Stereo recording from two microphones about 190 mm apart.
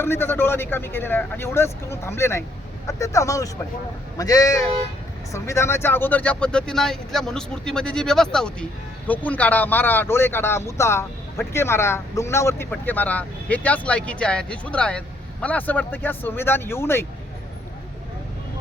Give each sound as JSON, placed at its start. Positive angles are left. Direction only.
{"t": 0.0, "sound": "speech", "side_deg": 10}